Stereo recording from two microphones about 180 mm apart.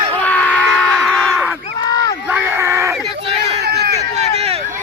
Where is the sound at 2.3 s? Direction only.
15° right (ahead or behind).